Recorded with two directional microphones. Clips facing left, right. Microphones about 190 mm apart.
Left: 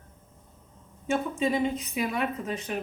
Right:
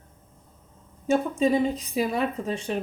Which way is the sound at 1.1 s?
35° right (ahead or behind).